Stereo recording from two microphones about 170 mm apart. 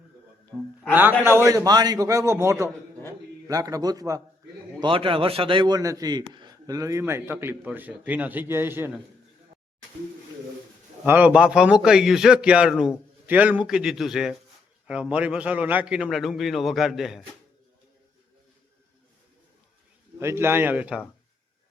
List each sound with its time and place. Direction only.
0.9 s a man's voice: 10° right (ahead or behind)
4.8 s a man's voice: 30° right (ahead or behind); by 9.0 s 10° right (ahead or behind)
11.0 s a man's voice: 10° right (ahead or behind)
20.1 s a man's voice: 15° right (ahead or behind)